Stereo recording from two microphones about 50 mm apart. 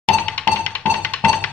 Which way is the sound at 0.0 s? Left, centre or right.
Left.